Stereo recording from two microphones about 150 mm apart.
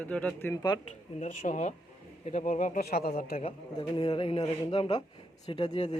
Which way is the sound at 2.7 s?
90° left.